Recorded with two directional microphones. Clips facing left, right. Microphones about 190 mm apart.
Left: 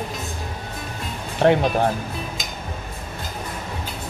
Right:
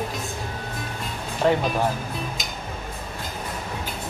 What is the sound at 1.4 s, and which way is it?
Speech, 65° left (ahead or behind).